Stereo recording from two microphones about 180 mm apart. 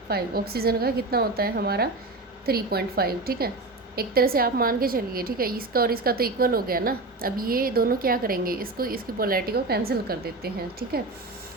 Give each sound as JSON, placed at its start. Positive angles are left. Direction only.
{"t": 0.1, "sound": "a woman's voice", "side_deg": -60}